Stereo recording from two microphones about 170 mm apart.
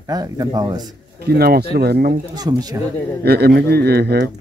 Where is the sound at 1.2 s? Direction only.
65° right (ahead or behind).